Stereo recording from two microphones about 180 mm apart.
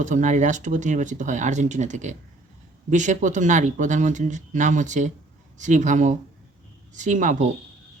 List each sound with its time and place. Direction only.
0.0 s speech: 45° right (ahead or behind)